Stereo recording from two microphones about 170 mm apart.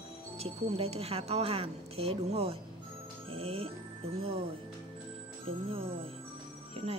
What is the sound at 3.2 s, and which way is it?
Music, 35° right (ahead or behind).